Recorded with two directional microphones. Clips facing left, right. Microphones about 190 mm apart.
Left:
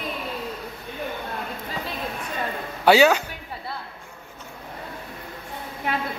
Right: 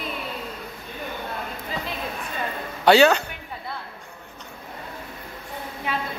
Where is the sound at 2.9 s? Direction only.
10° left (ahead or behind).